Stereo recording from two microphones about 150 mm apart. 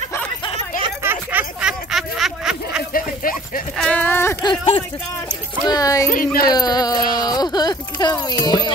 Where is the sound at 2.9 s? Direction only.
70° left (ahead or behind).